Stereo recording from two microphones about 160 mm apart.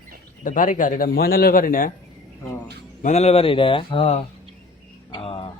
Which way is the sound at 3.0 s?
45° left (ahead or behind).